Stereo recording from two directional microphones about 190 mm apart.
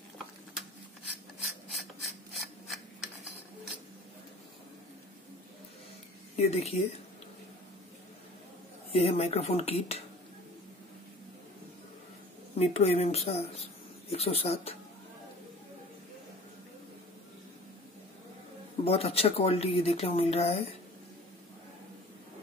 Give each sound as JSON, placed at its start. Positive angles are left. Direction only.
{"t": 1.4, "sound": "mechanisms", "side_deg": 0}
{"t": 6.3, "sound": "speech", "side_deg": 35}
{"t": 8.9, "sound": "speech", "side_deg": 35}
{"t": 12.5, "sound": "speech", "side_deg": 35}
{"t": 18.9, "sound": "speech", "side_deg": 30}